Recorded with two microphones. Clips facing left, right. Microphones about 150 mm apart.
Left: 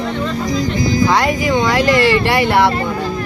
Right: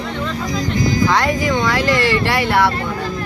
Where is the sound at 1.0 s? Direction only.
10° left (ahead or behind).